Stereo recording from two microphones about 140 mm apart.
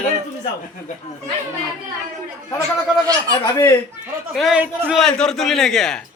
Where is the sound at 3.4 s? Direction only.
20° left (ahead or behind).